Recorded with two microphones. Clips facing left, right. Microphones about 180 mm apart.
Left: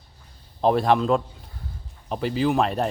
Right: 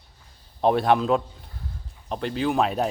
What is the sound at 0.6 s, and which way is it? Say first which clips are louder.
Speech: even; centre (ahead or behind).